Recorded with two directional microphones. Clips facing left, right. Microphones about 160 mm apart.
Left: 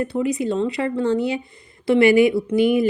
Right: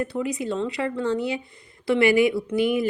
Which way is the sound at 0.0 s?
25° left (ahead or behind).